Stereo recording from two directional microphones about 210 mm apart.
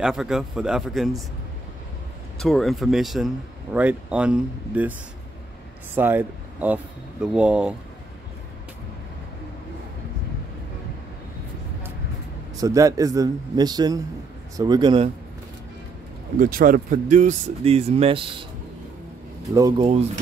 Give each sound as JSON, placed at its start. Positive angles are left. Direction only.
{"t": 0.0, "sound": "a man's voice", "side_deg": -5}
{"t": 2.3, "sound": "a man's voice", "side_deg": 0}
{"t": 5.9, "sound": "speech", "side_deg": -10}
{"t": 12.5, "sound": "speech", "side_deg": -15}
{"t": 16.3, "sound": "speech", "side_deg": -40}
{"t": 19.5, "sound": "speech", "side_deg": -15}